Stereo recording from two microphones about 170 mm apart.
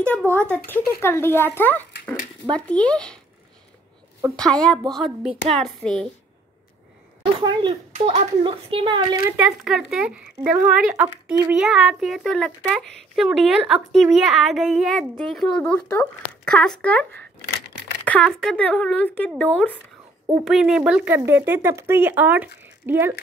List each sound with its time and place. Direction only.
0.3 s speech: 10° left (ahead or behind)
4.4 s speech: 5° left (ahead or behind)
7.3 s a child's voice: 25° right (ahead or behind)
9.4 s speech: 5° right (ahead or behind)
11.5 s speech: 5° right (ahead or behind)